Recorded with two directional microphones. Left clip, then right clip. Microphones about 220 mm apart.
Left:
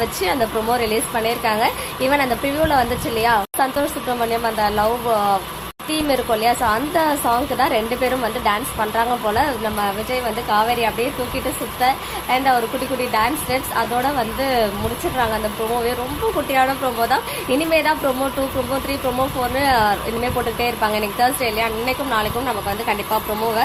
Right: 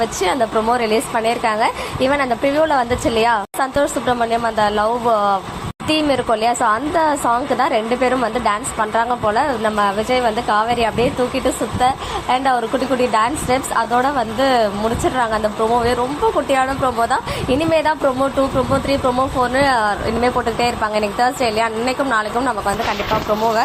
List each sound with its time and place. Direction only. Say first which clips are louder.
0.0 s a woman's voice: right 2 dB; 10° right (ahead or behind)
17.7 s a woman's voice: right 1 dB; 10° right (ahead or behind)
19.5 s a woman's voice: left 1 dB; 15° right (ahead or behind)